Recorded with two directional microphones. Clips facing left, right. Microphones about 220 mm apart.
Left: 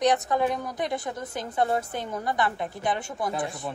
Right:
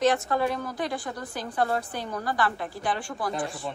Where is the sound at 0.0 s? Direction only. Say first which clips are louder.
Even; 20° left (ahead or behind).